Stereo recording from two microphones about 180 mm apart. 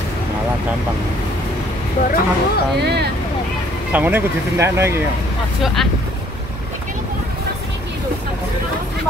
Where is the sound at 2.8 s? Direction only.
65° right (ahead or behind).